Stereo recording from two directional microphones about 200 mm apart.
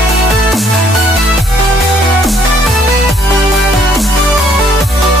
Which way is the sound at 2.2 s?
Centre (ahead or behind).